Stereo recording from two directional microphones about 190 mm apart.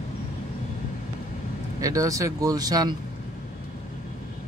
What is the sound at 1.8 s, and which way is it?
Speech, 20° right (ahead or behind).